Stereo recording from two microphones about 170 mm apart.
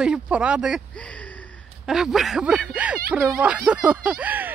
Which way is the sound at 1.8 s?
5° right (ahead or behind).